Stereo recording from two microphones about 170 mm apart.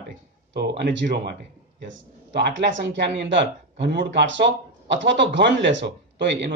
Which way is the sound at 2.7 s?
90° right.